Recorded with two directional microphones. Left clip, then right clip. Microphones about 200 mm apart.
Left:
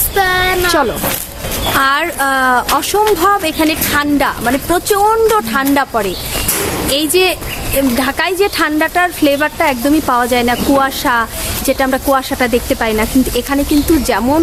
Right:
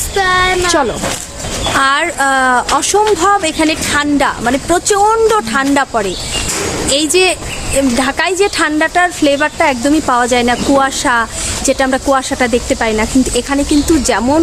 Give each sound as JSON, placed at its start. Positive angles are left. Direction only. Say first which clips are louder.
{"t": 0.2, "sound": "speech", "louder": "right 1 dB", "side_deg": 15}
{"t": 1.7, "sound": "speech", "louder": "right 1 dB", "side_deg": -10}